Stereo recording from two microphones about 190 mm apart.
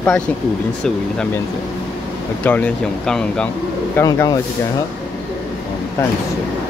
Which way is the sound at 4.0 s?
20° left (ahead or behind).